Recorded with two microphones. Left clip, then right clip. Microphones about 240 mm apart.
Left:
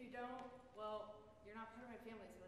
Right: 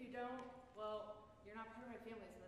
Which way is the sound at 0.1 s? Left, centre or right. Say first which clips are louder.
Right 2 dB; left.